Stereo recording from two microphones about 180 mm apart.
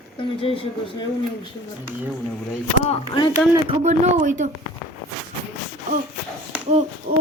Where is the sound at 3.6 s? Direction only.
40° right (ahead or behind).